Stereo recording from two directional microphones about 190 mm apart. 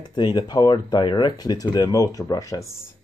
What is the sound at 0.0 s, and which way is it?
Speech, 20° left (ahead or behind).